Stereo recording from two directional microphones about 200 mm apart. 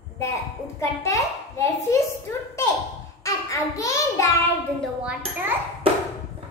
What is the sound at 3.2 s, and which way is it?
Child singing, 15° left (ahead or behind).